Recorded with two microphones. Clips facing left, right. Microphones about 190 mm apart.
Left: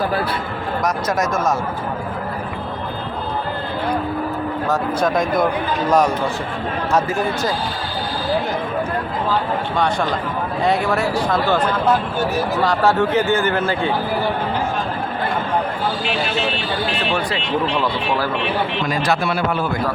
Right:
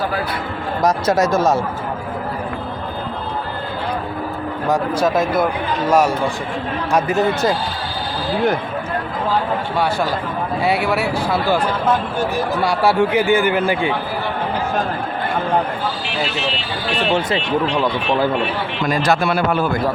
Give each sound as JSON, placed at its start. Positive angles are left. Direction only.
{"t": 0.8, "sound": "speech", "side_deg": -30}
{"t": 4.7, "sound": "a man's voice", "side_deg": -10}
{"t": 6.9, "sound": "a man's voice", "side_deg": -20}
{"t": 9.7, "sound": "a man's voice", "side_deg": -5}
{"t": 12.6, "sound": "a man's voice", "side_deg": -10}
{"t": 18.9, "sound": "a man's voice", "side_deg": -45}